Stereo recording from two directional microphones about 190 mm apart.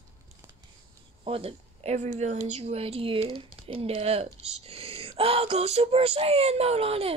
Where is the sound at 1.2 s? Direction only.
30° right (ahead or behind).